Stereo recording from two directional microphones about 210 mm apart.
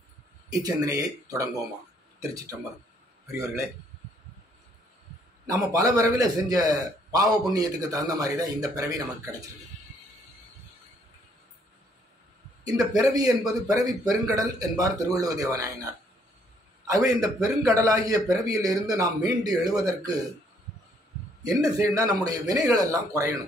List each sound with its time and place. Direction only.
0.5 s a man's voice: 15° right (ahead or behind)
5.5 s a man's voice: 15° right (ahead or behind)
12.9 s a man's voice: 15° right (ahead or behind)
21.6 s a man's voice: 15° right (ahead or behind)